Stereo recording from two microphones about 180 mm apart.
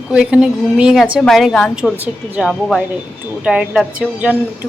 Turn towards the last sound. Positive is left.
turn(degrees=-5)  # may be behind; listen again after turning